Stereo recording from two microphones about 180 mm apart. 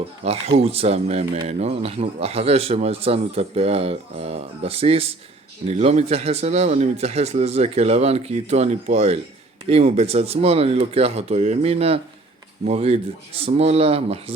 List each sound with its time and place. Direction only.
0.3 s speech: 35° right (ahead or behind)